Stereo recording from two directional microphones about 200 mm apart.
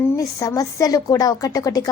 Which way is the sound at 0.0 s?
15° left (ahead or behind).